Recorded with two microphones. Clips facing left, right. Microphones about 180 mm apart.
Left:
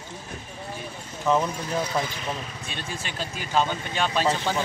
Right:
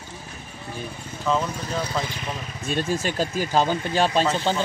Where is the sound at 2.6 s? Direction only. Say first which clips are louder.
Right 15 dB; 40° right (ahead or behind).